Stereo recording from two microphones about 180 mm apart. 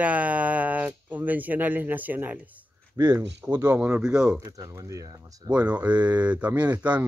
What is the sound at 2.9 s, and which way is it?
Speech, 20° right (ahead or behind).